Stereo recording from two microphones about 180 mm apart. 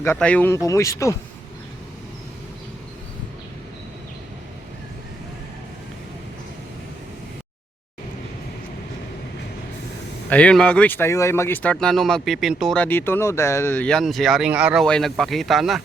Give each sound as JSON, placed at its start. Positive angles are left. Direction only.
{"t": 0.0, "sound": "speech", "side_deg": 10}
{"t": 10.2, "sound": "speech", "side_deg": 5}